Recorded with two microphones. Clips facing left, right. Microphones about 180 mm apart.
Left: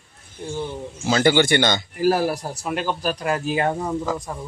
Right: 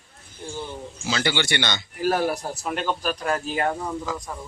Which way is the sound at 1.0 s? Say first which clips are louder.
Left 8 dB; 50° left (ahead or behind).